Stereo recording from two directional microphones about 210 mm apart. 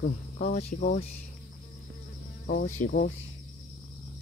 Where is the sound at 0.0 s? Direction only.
35° left (ahead or behind).